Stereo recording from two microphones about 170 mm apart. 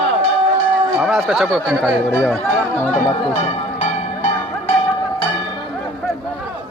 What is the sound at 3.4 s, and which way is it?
Music, 40° left (ahead or behind).